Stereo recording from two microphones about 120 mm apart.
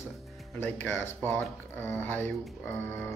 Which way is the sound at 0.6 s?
15° left (ahead or behind).